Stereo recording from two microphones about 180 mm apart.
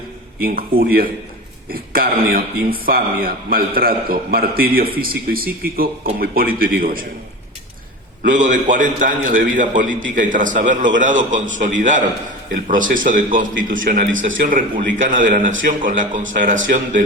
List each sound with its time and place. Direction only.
0.4 s a man's voice: 55° right (ahead or behind)
8.3 s a man's voice: 45° right (ahead or behind)